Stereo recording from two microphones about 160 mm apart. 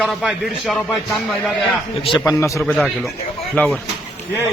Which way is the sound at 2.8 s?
Centre (ahead or behind).